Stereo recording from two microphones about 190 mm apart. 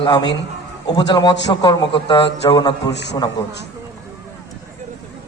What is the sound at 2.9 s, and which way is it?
Speech, 65° left (ahead or behind).